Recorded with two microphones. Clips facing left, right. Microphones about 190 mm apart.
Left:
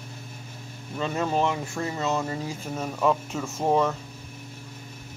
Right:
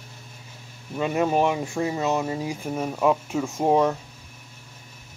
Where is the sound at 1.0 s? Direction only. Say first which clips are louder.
Right 4 dB; 15° right (ahead or behind).